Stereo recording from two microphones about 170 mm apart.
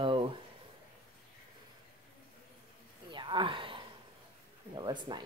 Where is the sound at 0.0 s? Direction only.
30° right (ahead or behind).